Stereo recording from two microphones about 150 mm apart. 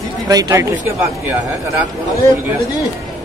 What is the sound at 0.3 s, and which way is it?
Speech, 25° right (ahead or behind).